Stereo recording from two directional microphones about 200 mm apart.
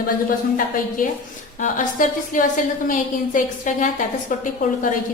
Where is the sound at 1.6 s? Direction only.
40° left (ahead or behind).